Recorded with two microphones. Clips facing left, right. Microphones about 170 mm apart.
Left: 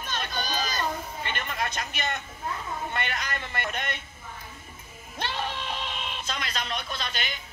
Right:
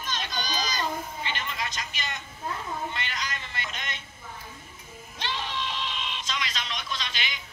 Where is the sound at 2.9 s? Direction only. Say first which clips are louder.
Left 3 dB; 55° left (ahead or behind).